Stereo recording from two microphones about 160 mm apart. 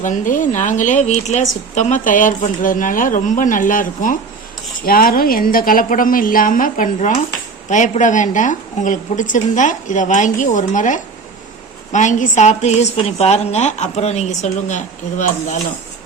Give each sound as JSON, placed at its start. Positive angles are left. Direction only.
{"t": 0.0, "sound": "a woman's voice", "side_deg": 55}